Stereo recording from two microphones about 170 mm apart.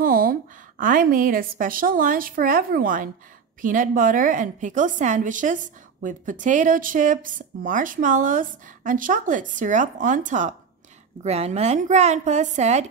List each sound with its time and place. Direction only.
0.0 s a woman's voice: 55° right (ahead or behind)